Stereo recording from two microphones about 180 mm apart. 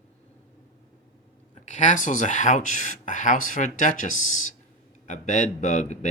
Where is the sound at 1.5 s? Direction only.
40° left (ahead or behind).